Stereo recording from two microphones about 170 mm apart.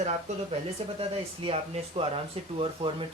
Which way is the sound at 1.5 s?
35° right (ahead or behind).